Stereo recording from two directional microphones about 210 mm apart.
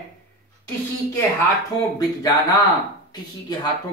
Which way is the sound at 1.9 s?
20° left (ahead or behind).